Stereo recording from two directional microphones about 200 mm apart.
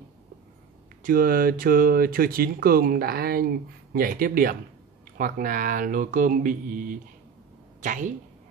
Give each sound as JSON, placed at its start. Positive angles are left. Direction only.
{"t": 1.0, "sound": "a woman's voice", "side_deg": -45}